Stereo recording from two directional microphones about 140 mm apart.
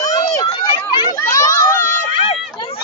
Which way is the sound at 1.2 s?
25° left (ahead or behind).